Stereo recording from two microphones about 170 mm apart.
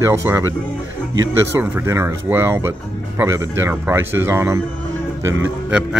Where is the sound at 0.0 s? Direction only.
15° right (ahead or behind).